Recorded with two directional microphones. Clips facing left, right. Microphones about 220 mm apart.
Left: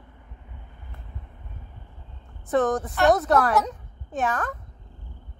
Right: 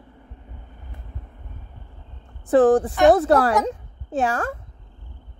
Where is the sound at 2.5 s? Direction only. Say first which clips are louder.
Right 8 dB; 30° right (ahead or behind).